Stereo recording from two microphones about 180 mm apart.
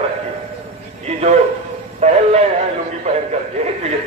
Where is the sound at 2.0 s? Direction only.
35° right (ahead or behind).